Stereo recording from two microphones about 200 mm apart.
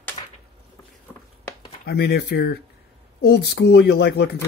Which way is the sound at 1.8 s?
55° left (ahead or behind).